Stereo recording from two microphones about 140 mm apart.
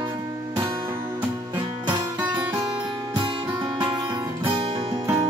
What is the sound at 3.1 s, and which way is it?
Music, 35° right (ahead or behind).